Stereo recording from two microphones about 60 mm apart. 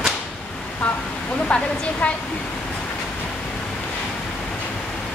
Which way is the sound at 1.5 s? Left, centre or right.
Centre.